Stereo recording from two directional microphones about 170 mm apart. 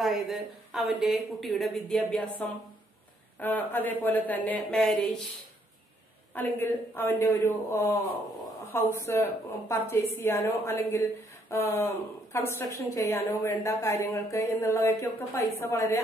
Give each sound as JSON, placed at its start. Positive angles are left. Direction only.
{"t": 0.0, "sound": "a woman's voice", "side_deg": 0}
{"t": 6.3, "sound": "a woman's voice", "side_deg": 10}